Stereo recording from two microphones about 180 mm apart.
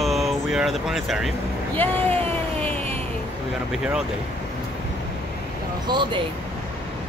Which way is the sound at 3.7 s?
5° right (ahead or behind).